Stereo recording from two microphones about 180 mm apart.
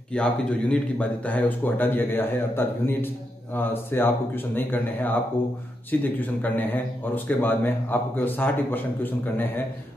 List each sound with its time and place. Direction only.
0.1 s speech: 5° left (ahead or behind)